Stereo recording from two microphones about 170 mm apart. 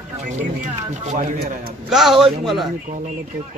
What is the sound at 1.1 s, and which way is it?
Speech, 50° right (ahead or behind).